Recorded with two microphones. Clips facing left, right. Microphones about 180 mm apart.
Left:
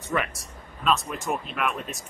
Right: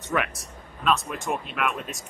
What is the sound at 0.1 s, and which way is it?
Speech, centre (ahead or behind).